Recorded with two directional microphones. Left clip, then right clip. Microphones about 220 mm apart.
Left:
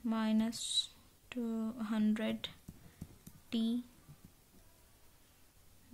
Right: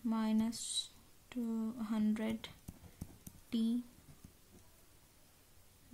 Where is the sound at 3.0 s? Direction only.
20° right (ahead or behind).